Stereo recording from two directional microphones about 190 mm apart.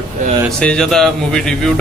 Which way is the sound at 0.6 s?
5° left (ahead or behind).